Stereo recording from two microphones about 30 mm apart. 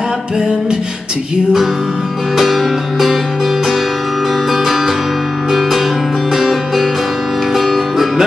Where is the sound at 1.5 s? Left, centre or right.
Centre.